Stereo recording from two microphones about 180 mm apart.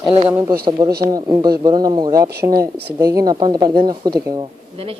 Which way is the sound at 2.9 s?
20° right (ahead or behind).